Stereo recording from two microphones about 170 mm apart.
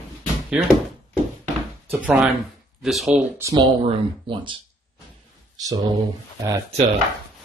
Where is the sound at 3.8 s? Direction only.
30° right (ahead or behind).